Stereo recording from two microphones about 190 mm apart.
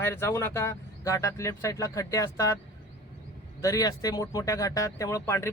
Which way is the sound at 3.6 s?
20° left (ahead or behind).